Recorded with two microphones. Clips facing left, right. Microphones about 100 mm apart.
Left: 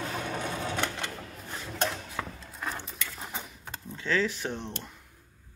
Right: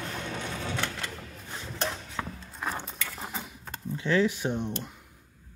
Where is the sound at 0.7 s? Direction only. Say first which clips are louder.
Left 1 dB; 20° left (ahead or behind).